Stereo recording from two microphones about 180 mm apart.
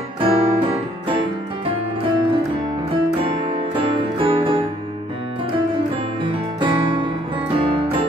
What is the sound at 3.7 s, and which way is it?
Music, 30° right (ahead or behind).